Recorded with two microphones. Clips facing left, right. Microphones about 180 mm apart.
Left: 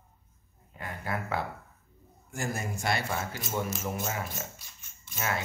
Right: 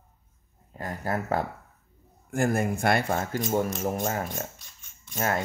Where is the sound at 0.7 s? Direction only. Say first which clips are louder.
Right 5 dB; 40° right (ahead or behind).